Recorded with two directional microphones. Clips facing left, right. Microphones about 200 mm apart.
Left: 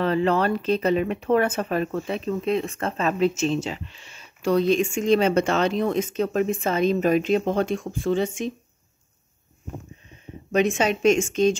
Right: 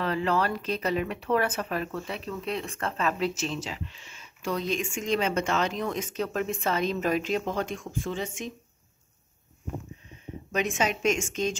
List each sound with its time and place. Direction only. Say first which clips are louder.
0.0 s speech: left 6 dB; 30° left (ahead or behind)
4.1 s a sound: left 2 dB; 35° left (ahead or behind)
4.6 s speech: left 11 dB; 30° left (ahead or behind)
10.5 s speech: left 7 dB; 30° left (ahead or behind)